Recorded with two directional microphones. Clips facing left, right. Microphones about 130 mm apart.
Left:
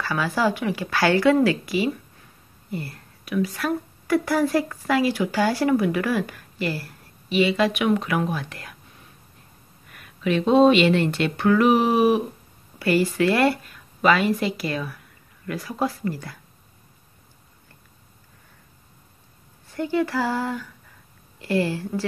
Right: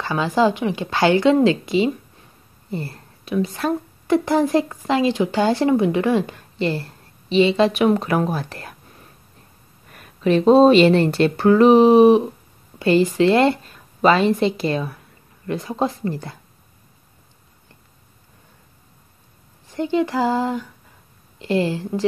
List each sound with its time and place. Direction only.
0.0 s a woman's voice: 20° right (ahead or behind)
9.8 s a woman's voice: 35° right (ahead or behind)
19.7 s a woman's voice: 20° right (ahead or behind)